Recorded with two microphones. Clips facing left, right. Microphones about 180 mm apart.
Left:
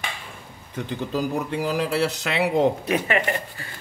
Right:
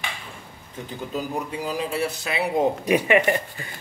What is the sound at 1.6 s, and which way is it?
Speech, 75° left (ahead or behind).